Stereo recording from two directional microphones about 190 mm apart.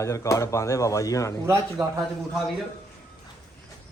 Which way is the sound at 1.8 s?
Centre (ahead or behind).